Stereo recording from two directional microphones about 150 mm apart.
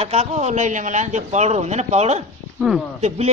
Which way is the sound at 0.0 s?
45° right (ahead or behind).